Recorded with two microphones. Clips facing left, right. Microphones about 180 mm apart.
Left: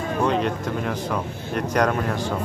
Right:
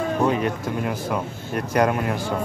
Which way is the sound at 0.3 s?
5° right (ahead or behind).